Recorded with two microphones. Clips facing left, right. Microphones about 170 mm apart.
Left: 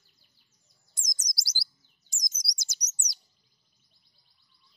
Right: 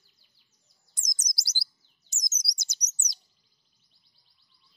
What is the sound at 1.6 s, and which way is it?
Chirp, 20° right (ahead or behind).